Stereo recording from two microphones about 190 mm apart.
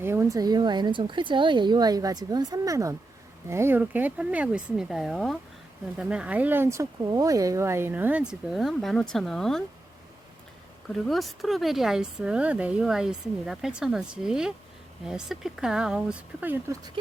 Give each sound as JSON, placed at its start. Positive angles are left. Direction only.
{"t": 0.0, "sound": "speech", "side_deg": -15}
{"t": 10.8, "sound": "speech", "side_deg": 0}